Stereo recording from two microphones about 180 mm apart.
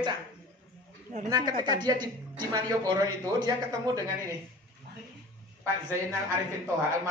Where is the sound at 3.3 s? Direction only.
20° right (ahead or behind).